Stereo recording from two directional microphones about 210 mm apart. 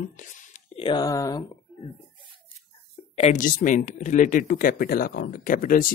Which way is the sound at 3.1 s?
35° left (ahead or behind).